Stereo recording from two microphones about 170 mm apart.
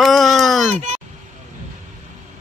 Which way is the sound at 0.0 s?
Centre (ahead or behind).